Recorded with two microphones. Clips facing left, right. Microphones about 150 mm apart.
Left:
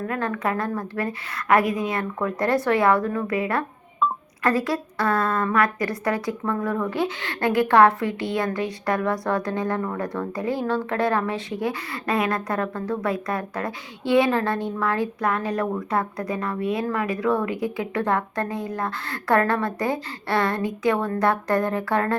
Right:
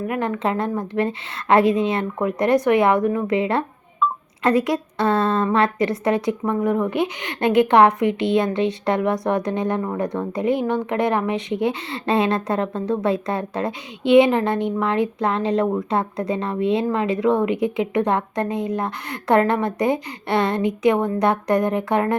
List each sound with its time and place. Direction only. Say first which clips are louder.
0.0 s a woman's voice: right 3 dB; 20° right (ahead or behind)